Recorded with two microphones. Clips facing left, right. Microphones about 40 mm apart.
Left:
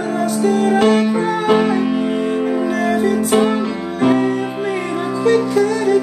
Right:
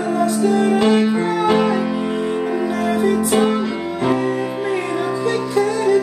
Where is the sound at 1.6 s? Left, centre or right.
Centre.